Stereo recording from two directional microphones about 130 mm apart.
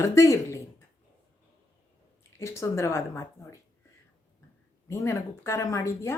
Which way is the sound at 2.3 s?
20° left (ahead or behind).